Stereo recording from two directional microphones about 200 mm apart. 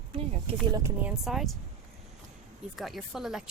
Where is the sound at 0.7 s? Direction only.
10° right (ahead or behind).